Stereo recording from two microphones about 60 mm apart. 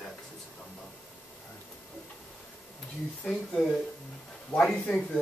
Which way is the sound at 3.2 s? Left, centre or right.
Centre.